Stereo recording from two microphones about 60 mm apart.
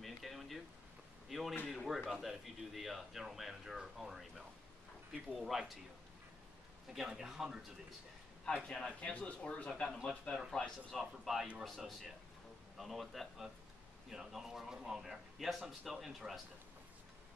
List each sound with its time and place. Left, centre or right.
0.0 s a sound: centre
1.3 s a man's voice: centre
7.0 s a man's voice: centre
8.6 s speech: centre
11.0 s a man's voice: centre